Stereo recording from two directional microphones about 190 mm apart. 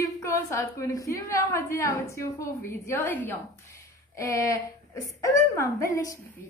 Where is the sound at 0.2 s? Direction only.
15° left (ahead or behind).